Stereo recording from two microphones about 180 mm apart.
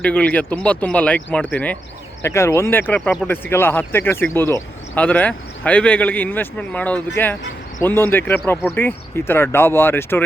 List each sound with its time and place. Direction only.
0.0 s speech: 5° left (ahead or behind)